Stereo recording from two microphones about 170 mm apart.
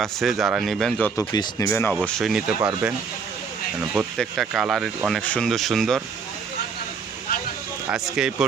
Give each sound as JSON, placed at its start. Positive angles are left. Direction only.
{"t": 0.0, "sound": "speech", "side_deg": 0}
{"t": 1.3, "sound": "speech", "side_deg": 20}
{"t": 1.9, "sound": "speech", "side_deg": 0}
{"t": 3.9, "sound": "speech", "side_deg": 0}
{"t": 8.1, "sound": "speech", "side_deg": -5}